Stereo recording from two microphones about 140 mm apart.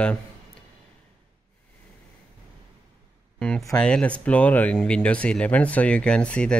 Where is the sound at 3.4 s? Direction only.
5° left (ahead or behind).